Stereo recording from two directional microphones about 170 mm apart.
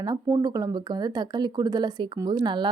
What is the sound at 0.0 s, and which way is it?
A woman's voice, 20° right (ahead or behind).